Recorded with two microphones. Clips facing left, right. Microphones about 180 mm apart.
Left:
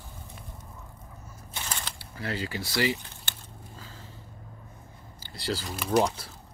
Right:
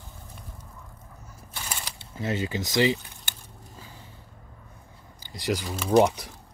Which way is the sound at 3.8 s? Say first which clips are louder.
Right 1 dB; 15° right (ahead or behind).